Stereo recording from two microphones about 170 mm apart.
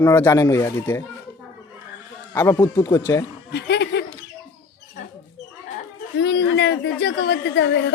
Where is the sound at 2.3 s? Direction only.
15° left (ahead or behind).